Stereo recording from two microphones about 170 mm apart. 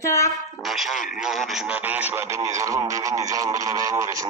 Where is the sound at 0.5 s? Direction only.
Centre (ahead or behind).